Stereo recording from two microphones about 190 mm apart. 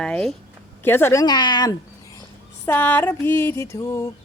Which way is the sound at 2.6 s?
10° left (ahead or behind).